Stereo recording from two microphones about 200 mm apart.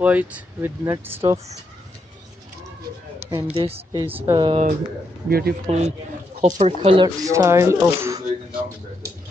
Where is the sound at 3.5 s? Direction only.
30° right (ahead or behind).